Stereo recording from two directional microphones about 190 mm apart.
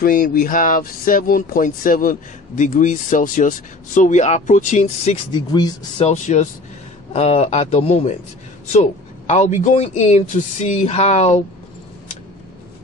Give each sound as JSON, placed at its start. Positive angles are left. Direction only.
{"t": 0.0, "sound": "speech", "side_deg": 45}
{"t": 5.9, "sound": "speech", "side_deg": 35}
{"t": 9.3, "sound": "speech", "side_deg": 40}